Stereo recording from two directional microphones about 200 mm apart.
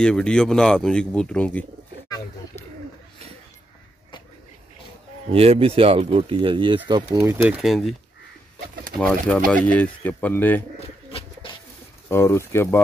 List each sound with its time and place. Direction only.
0.0 s speech: 5° left (ahead or behind)
5.3 s speech: 30° right (ahead or behind); by 7.9 s centre (ahead or behind)
8.9 s speech: 5° left (ahead or behind)
11.1 s pigeon: 30° left (ahead or behind)
12.1 s speech: 15° left (ahead or behind)